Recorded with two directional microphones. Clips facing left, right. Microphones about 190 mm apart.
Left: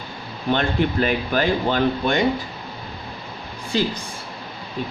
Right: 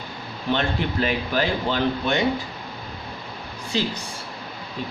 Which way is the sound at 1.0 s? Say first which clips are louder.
Left 3 dB; 50° left (ahead or behind).